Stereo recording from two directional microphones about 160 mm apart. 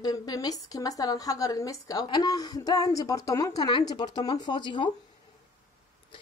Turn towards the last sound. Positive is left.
turn(degrees=30)  # may be behind; listen again after turning